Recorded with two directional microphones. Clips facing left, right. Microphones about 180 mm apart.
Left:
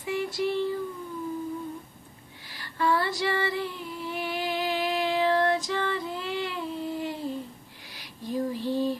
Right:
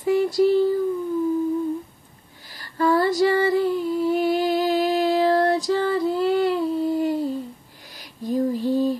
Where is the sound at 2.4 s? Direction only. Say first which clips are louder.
Right 6 dB; 40° right (ahead or behind).